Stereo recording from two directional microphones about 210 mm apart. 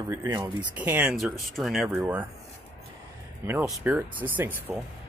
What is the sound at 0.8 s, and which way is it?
Speech, 5° right (ahead or behind).